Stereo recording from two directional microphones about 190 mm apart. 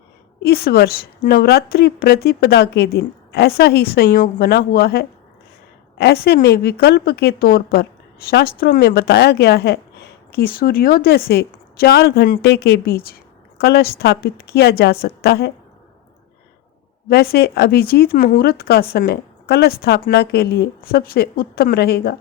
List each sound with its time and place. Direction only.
0.4 s a woman's voice: 55° left (ahead or behind)
17.1 s speech: 55° left (ahead or behind)